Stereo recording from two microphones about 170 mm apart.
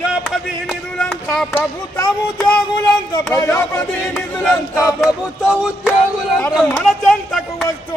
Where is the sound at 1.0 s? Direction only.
5° left (ahead or behind).